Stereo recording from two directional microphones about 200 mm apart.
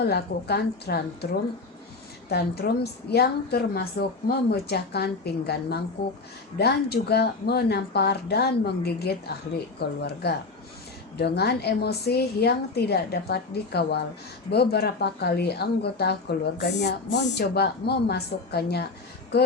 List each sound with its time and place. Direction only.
0.0 s a woman's voice: 55° left (ahead or behind)